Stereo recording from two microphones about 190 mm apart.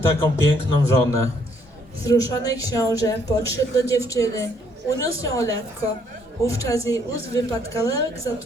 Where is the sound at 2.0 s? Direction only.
15° left (ahead or behind).